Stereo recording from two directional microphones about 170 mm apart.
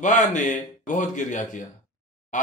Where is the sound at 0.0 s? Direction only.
45° left (ahead or behind).